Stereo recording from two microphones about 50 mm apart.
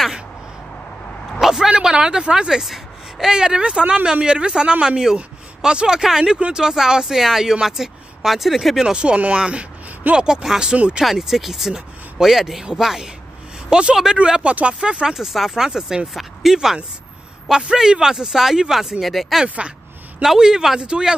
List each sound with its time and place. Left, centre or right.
1.4 s speech: centre
8.9 s speech: right
15.1 s speech: centre
16.1 s speech: centre
16.5 s speech: centre
19.4 s speech: right
20.2 s speech: centre